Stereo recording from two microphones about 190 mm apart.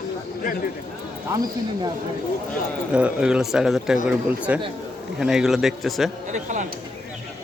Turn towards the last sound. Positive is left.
turn(degrees=-40)  # may be behind; listen again after turning